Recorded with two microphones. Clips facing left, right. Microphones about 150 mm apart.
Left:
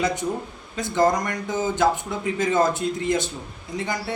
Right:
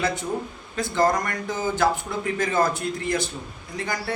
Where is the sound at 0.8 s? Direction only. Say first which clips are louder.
Left 1 dB; 20° left (ahead or behind).